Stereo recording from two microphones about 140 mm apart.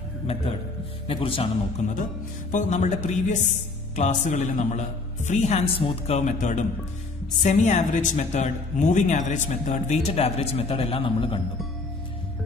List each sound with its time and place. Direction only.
1.0 s speech: 40° left (ahead or behind)
2.5 s a man's voice: 60° left (ahead or behind); by 11.4 s 35° left (ahead or behind)